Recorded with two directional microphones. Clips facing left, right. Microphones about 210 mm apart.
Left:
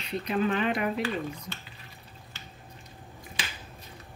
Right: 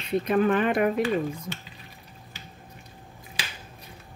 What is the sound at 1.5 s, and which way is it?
Speech, 10° right (ahead or behind).